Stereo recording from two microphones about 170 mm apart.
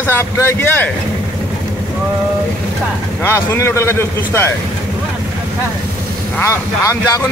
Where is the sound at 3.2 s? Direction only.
15° left (ahead or behind).